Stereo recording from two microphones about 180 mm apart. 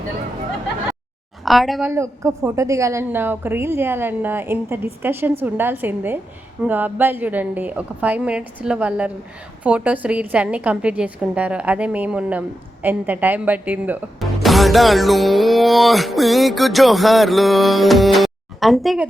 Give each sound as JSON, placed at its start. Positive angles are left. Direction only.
{"t": 1.5, "sound": "a woman's voice", "side_deg": 0}
{"t": 1.8, "sound": "a woman's voice", "side_deg": -15}